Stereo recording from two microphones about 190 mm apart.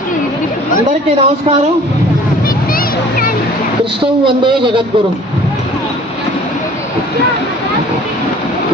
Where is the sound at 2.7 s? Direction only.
50° left (ahead or behind).